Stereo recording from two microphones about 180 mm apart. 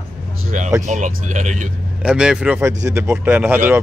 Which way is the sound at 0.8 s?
45° right (ahead or behind).